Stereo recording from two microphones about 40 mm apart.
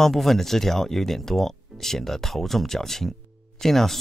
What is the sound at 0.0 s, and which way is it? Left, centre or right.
Speech, centre.